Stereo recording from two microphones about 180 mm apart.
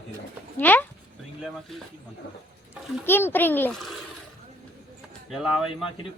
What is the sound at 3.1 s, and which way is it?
Speech, 10° left (ahead or behind).